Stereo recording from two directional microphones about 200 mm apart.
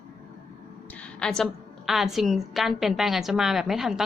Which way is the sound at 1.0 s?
5° left (ahead or behind).